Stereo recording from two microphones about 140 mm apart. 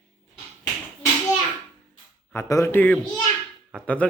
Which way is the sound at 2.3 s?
20° left (ahead or behind).